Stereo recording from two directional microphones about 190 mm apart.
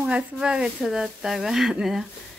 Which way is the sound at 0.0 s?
5° right (ahead or behind).